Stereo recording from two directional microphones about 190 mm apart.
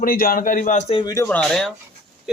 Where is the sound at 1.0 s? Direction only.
20° left (ahead or behind).